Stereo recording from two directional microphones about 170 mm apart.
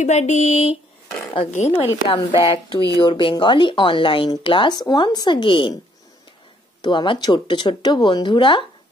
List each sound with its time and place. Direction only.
0.0 s speech: 40° left (ahead or behind)
2.0 s speech: 25° left (ahead or behind)
6.8 s speech: 30° left (ahead or behind)